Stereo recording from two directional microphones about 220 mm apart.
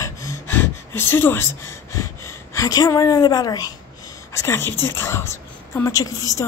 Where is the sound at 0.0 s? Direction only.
15° left (ahead or behind).